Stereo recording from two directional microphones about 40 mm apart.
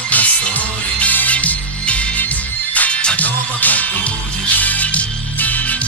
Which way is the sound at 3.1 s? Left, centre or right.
Left.